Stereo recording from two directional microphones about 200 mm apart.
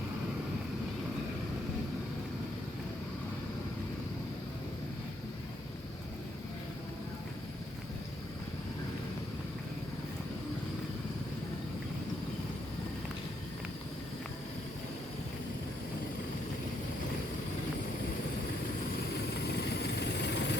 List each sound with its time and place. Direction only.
19.5 s vehicle: 55° left (ahead or behind)